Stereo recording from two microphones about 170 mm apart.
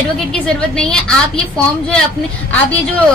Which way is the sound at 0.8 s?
5° left (ahead or behind).